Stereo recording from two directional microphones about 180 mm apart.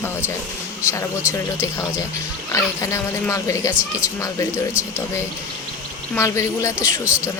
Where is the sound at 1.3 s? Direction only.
15° left (ahead or behind).